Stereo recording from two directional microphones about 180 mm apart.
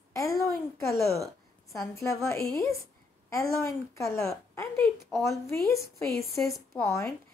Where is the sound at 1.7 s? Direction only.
15° left (ahead or behind).